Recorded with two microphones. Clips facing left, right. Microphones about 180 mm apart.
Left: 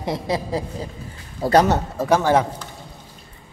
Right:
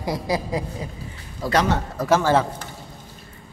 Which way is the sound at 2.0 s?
15° left (ahead or behind).